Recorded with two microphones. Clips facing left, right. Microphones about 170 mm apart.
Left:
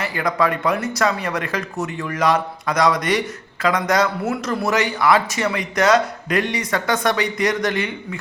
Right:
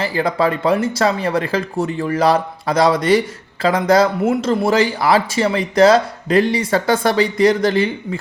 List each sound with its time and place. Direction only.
0.0 s speech: 30° right (ahead or behind)